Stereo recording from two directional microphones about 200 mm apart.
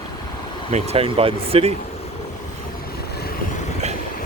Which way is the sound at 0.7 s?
30° right (ahead or behind).